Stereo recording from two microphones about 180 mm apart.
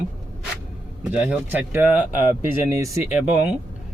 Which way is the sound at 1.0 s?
5° right (ahead or behind).